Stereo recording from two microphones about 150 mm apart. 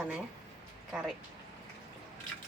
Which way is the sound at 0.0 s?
5° right (ahead or behind).